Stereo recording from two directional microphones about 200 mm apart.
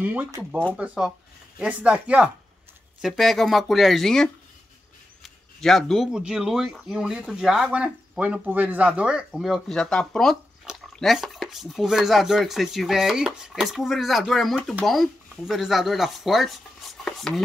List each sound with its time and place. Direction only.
0.0 s speech: 10° right (ahead or behind)